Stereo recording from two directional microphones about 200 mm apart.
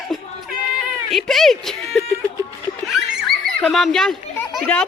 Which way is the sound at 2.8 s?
Centre (ahead or behind).